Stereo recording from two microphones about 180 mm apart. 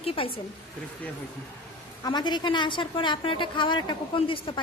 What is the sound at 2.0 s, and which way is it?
A woman's voice, 25° left (ahead or behind).